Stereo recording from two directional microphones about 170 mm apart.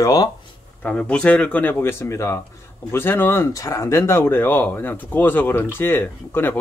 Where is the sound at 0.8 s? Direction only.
5° left (ahead or behind).